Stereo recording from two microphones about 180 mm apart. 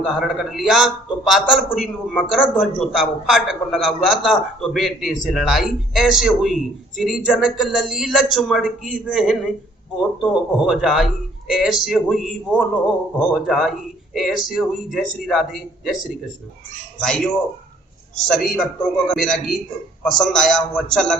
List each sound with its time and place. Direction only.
0.0 s a man's voice: 5° right (ahead or behind)
10.7 s a man's voice: centre (ahead or behind)
18.3 s a man's voice: centre (ahead or behind)